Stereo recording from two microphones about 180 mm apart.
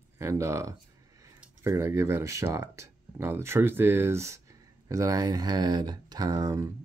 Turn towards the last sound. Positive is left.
turn(degrees=-20)  # may be behind; listen again after turning